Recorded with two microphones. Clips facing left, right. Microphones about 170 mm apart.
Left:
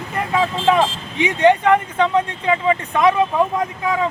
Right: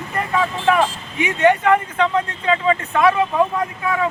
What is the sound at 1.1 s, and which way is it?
Speech, 20° left (ahead or behind).